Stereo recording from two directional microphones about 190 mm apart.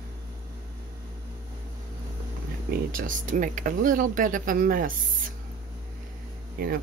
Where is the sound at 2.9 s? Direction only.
45° right (ahead or behind).